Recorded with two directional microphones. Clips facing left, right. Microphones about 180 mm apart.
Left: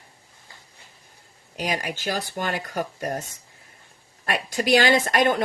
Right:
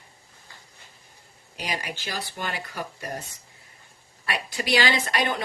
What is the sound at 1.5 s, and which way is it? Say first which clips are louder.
Speech: left 5 dB; 45° left (ahead or behind).